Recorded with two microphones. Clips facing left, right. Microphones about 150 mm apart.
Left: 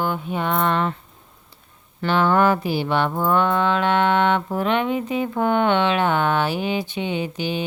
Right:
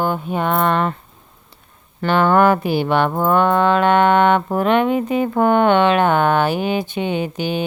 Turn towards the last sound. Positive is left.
turn(degrees=-50)  # may be behind; listen again after turning